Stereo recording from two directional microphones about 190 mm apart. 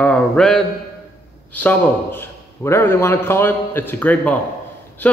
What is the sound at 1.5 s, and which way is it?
A man's voice, 10° left (ahead or behind).